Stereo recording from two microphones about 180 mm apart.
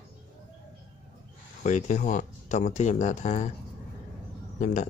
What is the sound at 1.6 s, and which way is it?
Speech, 40° left (ahead or behind).